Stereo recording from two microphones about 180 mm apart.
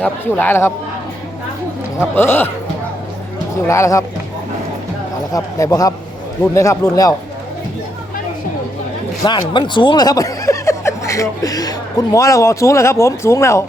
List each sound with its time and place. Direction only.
0.0 s a man's voice: 10° left (ahead or behind)
2.1 s a man's voice: 10° left (ahead or behind)
3.7 s a man's voice: 15° left (ahead or behind)
5.3 s a man's voice: 20° left (ahead or behind)
9.2 s speech: 25° left (ahead or behind)